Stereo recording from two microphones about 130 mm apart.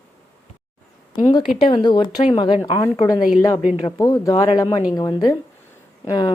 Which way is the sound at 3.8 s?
25° left (ahead or behind).